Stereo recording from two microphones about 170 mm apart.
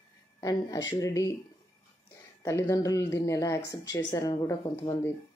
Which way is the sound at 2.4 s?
20° left (ahead or behind).